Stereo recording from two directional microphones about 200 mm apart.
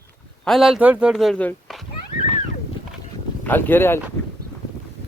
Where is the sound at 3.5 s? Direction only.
10° left (ahead or behind).